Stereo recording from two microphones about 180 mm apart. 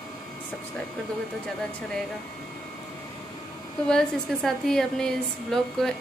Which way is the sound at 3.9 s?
Centre (ahead or behind).